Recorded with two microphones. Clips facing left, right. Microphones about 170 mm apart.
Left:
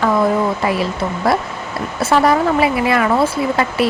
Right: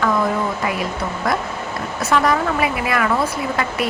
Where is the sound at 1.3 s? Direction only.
30° left (ahead or behind).